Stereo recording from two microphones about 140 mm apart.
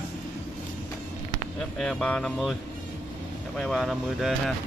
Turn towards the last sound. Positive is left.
turn(degrees=0)  # may be behind; listen again after turning